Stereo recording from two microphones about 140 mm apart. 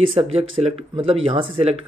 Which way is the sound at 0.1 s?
45° right (ahead or behind).